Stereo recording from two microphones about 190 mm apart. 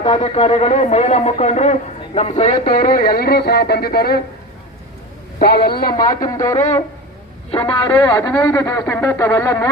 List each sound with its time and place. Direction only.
0.0 s speech: 30° left (ahead or behind); by 4.2 s 55° left (ahead or behind)
5.4 s a man's voice: 55° left (ahead or behind)
6.1 s speech: 20° left (ahead or behind)
7.5 s a man's voice: 30° left (ahead or behind)
7.9 s speech: 10° left (ahead or behind)